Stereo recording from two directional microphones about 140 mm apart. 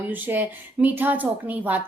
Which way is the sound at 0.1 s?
15° right (ahead or behind).